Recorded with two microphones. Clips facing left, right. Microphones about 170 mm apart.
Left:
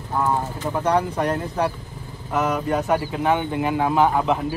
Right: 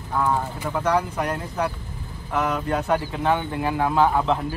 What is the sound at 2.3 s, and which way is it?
Speech, 20° left (ahead or behind).